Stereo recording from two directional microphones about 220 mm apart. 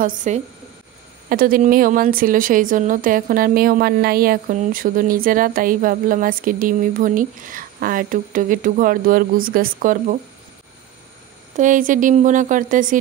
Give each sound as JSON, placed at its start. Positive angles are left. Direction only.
{"t": 0.0, "sound": "speech", "side_deg": -35}
{"t": 11.5, "sound": "speech", "side_deg": -35}